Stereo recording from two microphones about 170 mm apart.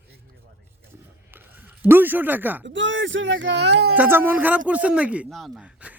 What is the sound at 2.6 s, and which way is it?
Speech, 90° right.